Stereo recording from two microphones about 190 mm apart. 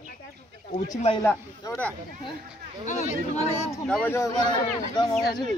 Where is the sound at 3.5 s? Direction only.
15° left (ahead or behind).